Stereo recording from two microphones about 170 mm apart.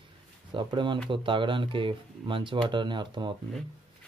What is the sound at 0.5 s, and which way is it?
Speech, 30° right (ahead or behind).